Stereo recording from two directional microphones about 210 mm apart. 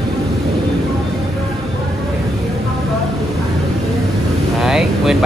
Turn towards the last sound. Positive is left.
turn(degrees=0)  # may be behind; listen again after turning